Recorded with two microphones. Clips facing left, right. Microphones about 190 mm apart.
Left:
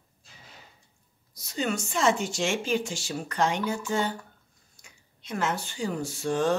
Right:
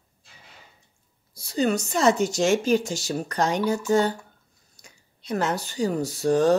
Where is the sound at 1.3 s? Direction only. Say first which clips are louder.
Right 6 dB; 35° right (ahead or behind).